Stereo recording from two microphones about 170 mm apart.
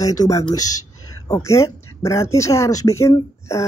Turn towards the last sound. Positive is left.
turn(degrees=15)  # may be behind; listen again after turning